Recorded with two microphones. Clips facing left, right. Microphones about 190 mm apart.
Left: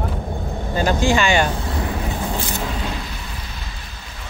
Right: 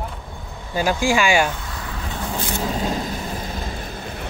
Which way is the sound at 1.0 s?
10° right (ahead or behind).